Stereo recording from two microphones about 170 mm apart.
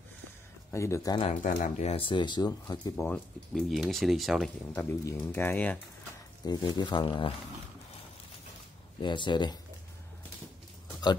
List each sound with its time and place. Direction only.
0.7 s speech: 15° left (ahead or behind)
1.4 s speech: 50° left (ahead or behind); by 3.1 s 25° left (ahead or behind)
3.1 s speech: centre (ahead or behind)
4.7 s speech: 15° left (ahead or behind)
6.4 s speech: 25° left (ahead or behind)
9.0 s speech: 25° left (ahead or behind)